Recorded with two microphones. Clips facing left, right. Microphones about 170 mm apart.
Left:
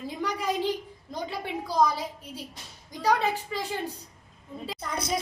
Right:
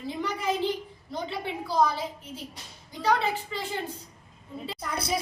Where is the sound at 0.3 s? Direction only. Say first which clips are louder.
Even; 10° left (ahead or behind).